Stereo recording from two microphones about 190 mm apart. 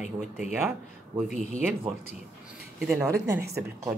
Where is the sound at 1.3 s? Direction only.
40° left (ahead or behind).